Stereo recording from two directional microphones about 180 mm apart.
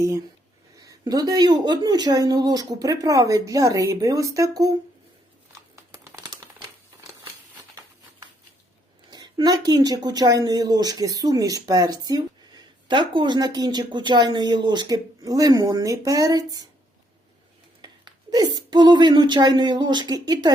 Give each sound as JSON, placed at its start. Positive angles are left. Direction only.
{"t": 0.8, "sound": "speech", "side_deg": -20}
{"t": 5.7, "sound": "crumpling", "side_deg": -15}
{"t": 9.0, "sound": "speech", "side_deg": -25}
{"t": 17.8, "sound": "a woman's voice", "side_deg": -25}